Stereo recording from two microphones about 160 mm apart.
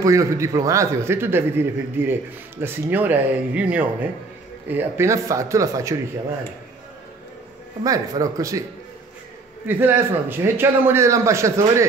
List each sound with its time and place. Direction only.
0.0 s a man's voice: 20° right (ahead or behind)
7.8 s speech: 20° right (ahead or behind)
9.7 s a man's voice: 15° right (ahead or behind)